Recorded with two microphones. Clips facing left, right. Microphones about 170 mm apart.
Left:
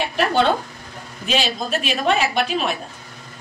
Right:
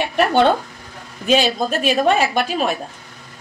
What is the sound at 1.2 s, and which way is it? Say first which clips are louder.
A woman's voice: right 6 dB; 45° right (ahead or behind).